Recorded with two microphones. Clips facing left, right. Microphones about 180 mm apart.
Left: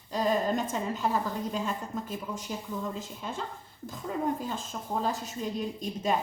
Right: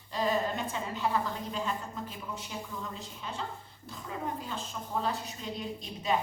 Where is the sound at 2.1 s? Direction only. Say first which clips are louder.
Left 5 dB; 45° left (ahead or behind).